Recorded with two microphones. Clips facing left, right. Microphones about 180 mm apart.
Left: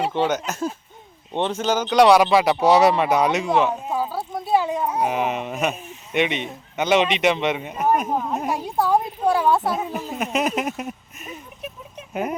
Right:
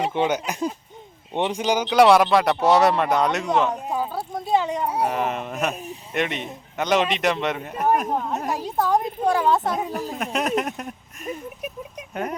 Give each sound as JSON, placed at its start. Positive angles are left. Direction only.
{"t": 0.1, "sound": "a man's voice", "side_deg": -10}
{"t": 5.8, "sound": "a sound", "side_deg": -35}
{"t": 6.1, "sound": "a man's voice", "side_deg": 0}